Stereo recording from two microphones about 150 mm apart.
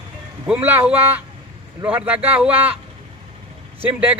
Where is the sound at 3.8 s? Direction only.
10° right (ahead or behind).